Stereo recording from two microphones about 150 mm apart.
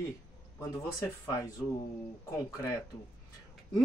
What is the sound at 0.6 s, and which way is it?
Speech, 20° left (ahead or behind).